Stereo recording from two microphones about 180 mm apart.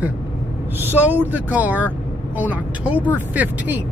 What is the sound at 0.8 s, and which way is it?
Speech, 10° right (ahead or behind).